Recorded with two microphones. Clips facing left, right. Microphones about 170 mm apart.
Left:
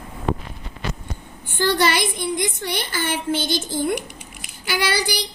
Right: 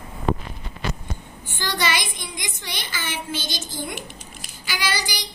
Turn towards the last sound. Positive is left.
turn(degrees=60)  # may be behind; listen again after turning